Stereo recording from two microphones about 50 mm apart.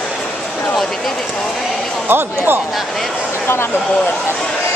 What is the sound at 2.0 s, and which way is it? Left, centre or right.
Speech, right.